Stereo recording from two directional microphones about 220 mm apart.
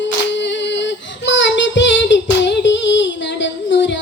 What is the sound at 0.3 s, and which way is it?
Child singing, 55° left (ahead or behind).